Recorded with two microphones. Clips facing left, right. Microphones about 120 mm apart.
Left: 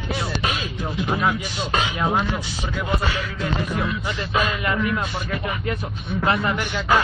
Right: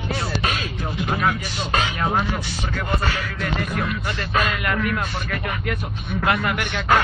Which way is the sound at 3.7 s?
15° left (ahead or behind).